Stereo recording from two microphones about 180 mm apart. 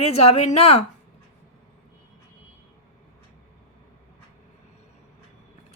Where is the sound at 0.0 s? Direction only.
35° left (ahead or behind).